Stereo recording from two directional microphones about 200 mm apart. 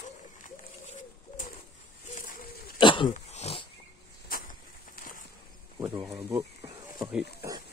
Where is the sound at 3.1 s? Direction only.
35° left (ahead or behind).